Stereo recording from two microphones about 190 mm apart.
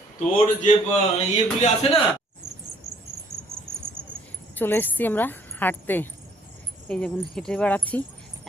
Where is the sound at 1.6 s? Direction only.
35° left (ahead or behind).